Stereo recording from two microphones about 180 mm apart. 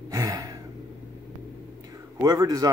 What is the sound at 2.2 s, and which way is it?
Speech, 20° right (ahead or behind).